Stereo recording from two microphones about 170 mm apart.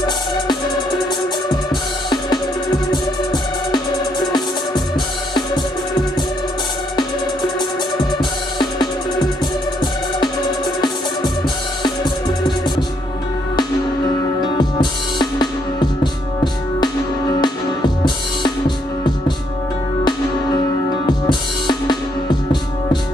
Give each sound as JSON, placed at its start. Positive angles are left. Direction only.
{"t": 2.0, "sound": "music", "side_deg": 25}
{"t": 3.7, "sound": "music", "side_deg": 25}
{"t": 8.0, "sound": "music", "side_deg": 25}
{"t": 14.4, "sound": "music", "side_deg": 25}
{"t": 21.3, "sound": "drum kit", "side_deg": 25}